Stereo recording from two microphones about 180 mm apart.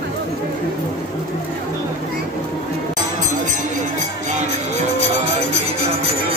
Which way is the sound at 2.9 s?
45° right (ahead or behind).